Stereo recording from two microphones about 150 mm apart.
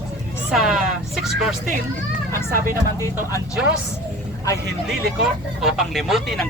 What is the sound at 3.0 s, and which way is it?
Speech, 20° left (ahead or behind).